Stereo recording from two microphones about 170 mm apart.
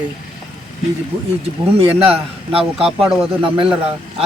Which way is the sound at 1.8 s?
35° right (ahead or behind).